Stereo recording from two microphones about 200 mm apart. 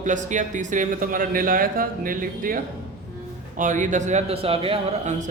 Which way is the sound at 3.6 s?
40° right (ahead or behind).